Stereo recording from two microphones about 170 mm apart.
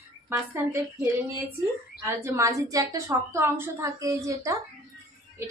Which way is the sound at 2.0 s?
15° right (ahead or behind).